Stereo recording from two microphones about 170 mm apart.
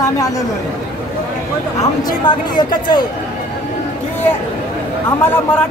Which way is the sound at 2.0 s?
25° left (ahead or behind).